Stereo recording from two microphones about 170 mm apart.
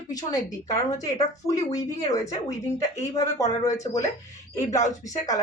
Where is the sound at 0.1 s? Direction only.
20° left (ahead or behind).